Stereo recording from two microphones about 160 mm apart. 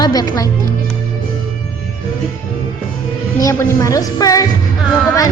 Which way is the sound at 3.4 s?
20° left (ahead or behind).